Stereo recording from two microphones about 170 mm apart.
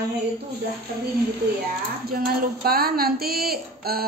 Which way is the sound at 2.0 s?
60° right (ahead or behind).